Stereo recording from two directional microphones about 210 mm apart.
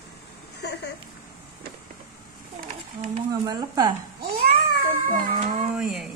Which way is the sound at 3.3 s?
20° right (ahead or behind).